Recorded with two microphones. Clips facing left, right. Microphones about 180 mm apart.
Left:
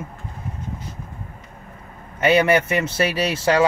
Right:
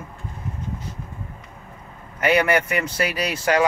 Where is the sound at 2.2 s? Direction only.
25° left (ahead or behind).